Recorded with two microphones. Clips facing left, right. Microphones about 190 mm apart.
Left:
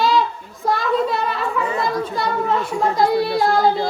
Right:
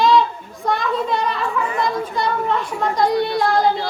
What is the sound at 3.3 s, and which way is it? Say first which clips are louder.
Child singing: left 1 dB; 25° left (ahead or behind).